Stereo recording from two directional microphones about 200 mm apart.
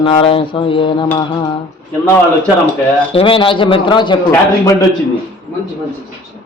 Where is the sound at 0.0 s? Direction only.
25° left (ahead or behind).